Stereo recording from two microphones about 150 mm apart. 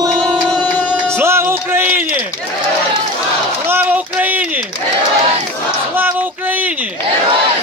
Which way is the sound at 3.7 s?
10° right (ahead or behind).